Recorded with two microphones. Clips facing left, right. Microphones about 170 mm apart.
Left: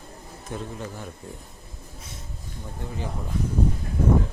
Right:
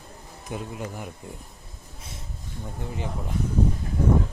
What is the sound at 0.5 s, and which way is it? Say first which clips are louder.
Speech: right 1 dB; 10° right (ahead or behind).